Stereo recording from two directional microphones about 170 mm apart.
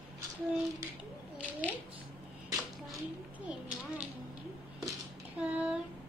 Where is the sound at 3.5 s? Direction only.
5° right (ahead or behind).